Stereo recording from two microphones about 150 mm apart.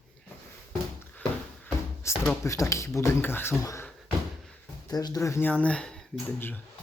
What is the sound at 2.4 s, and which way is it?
Speech, 20° left (ahead or behind).